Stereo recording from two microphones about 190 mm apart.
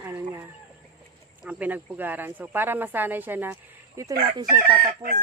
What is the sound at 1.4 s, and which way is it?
Speech, 5° right (ahead or behind).